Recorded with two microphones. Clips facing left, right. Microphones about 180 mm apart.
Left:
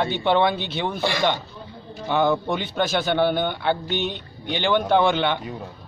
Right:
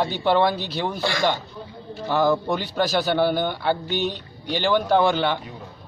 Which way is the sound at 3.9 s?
40° right (ahead or behind).